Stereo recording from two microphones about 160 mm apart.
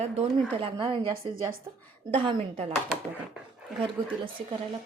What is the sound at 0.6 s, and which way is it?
Speech, 30° right (ahead or behind).